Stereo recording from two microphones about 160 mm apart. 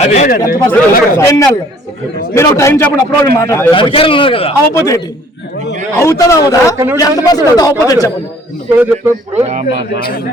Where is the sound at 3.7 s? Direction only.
35° left (ahead or behind).